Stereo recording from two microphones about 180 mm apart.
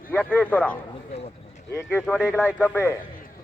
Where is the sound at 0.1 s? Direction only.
10° left (ahead or behind).